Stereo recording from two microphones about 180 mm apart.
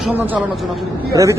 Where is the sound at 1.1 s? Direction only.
20° right (ahead or behind).